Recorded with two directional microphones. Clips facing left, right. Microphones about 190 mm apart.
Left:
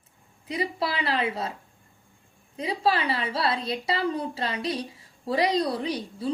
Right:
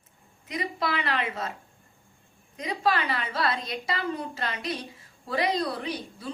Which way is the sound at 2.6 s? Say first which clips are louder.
Left 2 dB; 30° left (ahead or behind).